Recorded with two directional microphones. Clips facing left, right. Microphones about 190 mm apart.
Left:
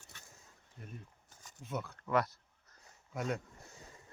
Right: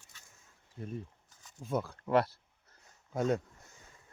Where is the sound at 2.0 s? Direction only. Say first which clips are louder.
Right 3 dB; 30° right (ahead or behind).